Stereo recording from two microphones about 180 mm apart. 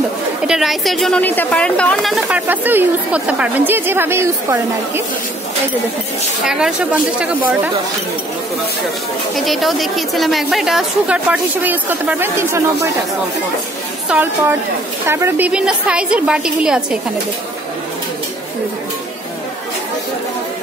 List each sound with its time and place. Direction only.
0.5 s a woman's voice: centre (ahead or behind)
6.4 s a woman's voice: 5° right (ahead or behind)
9.4 s a woman's voice: centre (ahead or behind)
14.0 s a woman's voice: 10° right (ahead or behind)